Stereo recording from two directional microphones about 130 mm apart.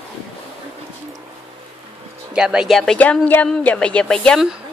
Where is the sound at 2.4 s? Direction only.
5° right (ahead or behind).